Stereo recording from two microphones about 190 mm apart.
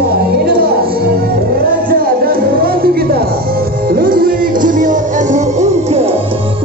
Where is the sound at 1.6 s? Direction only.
50° right (ahead or behind).